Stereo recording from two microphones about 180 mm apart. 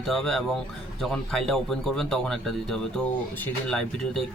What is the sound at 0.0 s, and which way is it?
Speech, centre (ahead or behind).